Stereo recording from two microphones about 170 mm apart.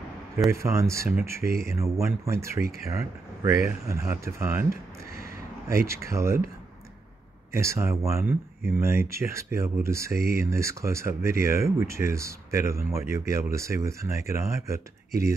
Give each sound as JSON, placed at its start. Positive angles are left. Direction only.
{"t": 0.5, "sound": "speech", "side_deg": -15}
{"t": 3.8, "sound": "speech", "side_deg": -15}
{"t": 5.9, "sound": "speech", "side_deg": -15}
{"t": 7.5, "sound": "speech", "side_deg": -15}